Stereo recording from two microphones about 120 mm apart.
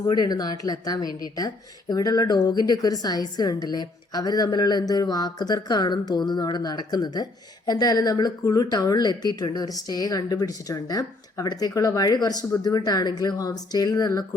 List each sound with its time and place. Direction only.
0.0 s a woman's voice: 35° left (ahead or behind)